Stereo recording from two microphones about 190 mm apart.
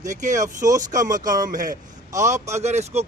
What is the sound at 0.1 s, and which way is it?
Speech, 40° right (ahead or behind).